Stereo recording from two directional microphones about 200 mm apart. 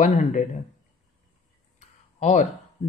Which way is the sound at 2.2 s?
35° left (ahead or behind).